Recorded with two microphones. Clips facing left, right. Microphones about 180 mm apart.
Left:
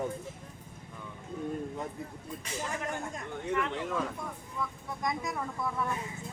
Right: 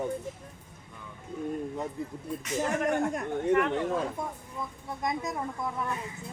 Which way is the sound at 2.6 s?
60° right (ahead or behind).